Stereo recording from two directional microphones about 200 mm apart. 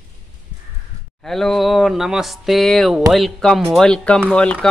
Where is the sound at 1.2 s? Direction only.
Centre (ahead or behind).